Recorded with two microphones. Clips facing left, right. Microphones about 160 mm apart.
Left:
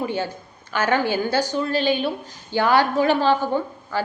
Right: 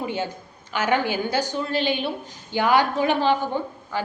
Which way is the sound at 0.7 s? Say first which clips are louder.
Left 2 dB; 15° right (ahead or behind).